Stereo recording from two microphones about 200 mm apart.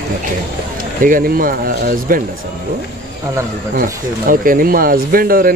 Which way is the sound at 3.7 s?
45° right (ahead or behind).